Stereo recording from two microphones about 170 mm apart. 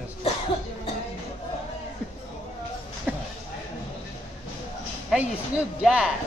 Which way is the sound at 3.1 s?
10° right (ahead or behind).